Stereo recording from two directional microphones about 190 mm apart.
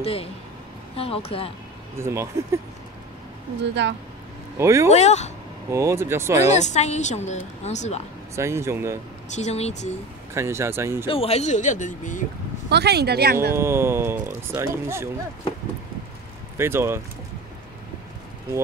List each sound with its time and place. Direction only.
0.0 s a woman's voice: 30° left (ahead or behind)
2.0 s speech: 15° right (ahead or behind)
3.8 s speech: 65° right (ahead or behind)
4.6 s speech: 15° right (ahead or behind)
4.8 s a woman's voice: 35° left (ahead or behind)
5.7 s speech: 15° right (ahead or behind)
6.5 s a woman's voice: 35° left (ahead or behind)
8.4 s speech: 15° right (ahead or behind)
9.3 s a woman's voice: 35° left (ahead or behind)
10.3 s speech: 15° right (ahead or behind)
11.1 s a woman's voice: 30° left (ahead or behind)
12.6 s speech: 60° right (ahead or behind)
13.5 s speech: 15° right (ahead or behind)
16.5 s speech: 10° right (ahead or behind)